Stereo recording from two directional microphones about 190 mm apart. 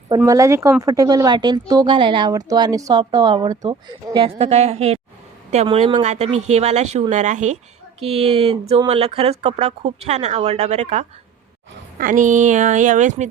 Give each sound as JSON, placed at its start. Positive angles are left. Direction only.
{"t": 0.3, "sound": "a woman's voice", "side_deg": -15}